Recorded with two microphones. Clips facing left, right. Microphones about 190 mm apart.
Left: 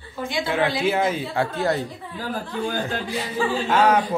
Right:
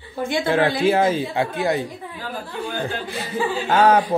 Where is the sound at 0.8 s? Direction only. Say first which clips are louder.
Right 4 dB; 30° right (ahead or behind).